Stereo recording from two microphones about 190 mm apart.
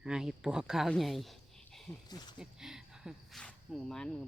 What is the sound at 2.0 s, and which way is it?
Speech, 20° left (ahead or behind).